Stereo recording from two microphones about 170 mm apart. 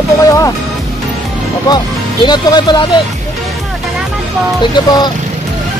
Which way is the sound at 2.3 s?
25° left (ahead or behind).